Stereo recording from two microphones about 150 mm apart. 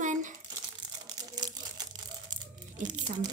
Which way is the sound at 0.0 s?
55° right (ahead or behind).